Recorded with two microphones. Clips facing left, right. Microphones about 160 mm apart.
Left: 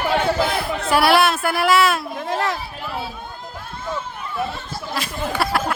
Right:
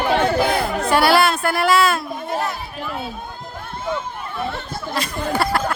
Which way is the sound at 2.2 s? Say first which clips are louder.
Left 2 dB; 90° left.